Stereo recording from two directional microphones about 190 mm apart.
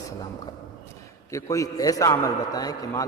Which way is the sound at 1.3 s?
15° left (ahead or behind).